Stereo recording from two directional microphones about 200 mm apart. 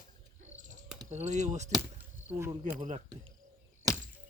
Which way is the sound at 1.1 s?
35° right (ahead or behind).